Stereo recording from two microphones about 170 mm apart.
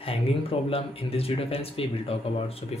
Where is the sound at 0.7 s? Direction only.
35° left (ahead or behind).